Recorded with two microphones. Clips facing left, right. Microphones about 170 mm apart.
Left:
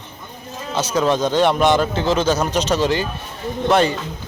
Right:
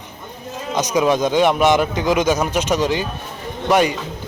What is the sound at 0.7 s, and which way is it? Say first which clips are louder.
A man's voice: right 1 dB; 15° right (ahead or behind).